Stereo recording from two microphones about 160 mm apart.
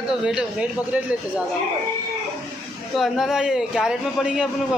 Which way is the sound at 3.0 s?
Centre (ahead or behind).